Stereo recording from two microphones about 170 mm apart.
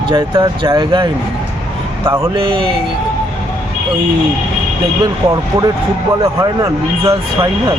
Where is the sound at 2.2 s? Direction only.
30° right (ahead or behind).